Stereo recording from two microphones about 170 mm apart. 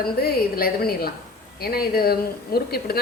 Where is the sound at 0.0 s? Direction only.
60° left (ahead or behind).